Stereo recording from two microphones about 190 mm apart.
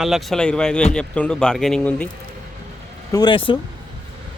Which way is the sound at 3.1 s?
25° left (ahead or behind).